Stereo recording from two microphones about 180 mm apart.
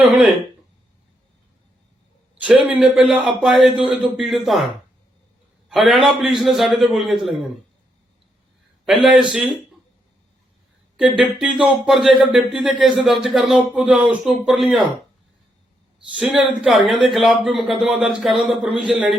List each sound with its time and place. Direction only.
0.0 s speech: 5° right (ahead or behind)
2.4 s speech: 5° right (ahead or behind)
8.8 s a man's voice: centre (ahead or behind)
11.2 s speech: 5° right (ahead or behind)
16.1 s speech: 5° right (ahead or behind)